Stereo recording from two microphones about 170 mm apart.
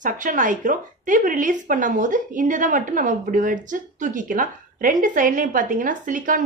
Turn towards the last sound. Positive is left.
turn(degrees=-50)  # may be behind; listen again after turning